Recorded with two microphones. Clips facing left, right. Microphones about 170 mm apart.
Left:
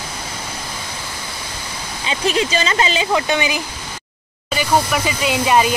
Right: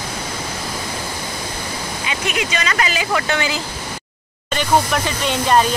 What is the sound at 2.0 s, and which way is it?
Speech, 30° left (ahead or behind).